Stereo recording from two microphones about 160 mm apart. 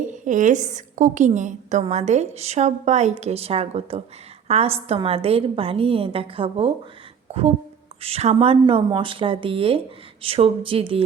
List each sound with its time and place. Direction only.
0.3 s a woman's voice: 50° right (ahead or behind); by 11.0 s 35° right (ahead or behind)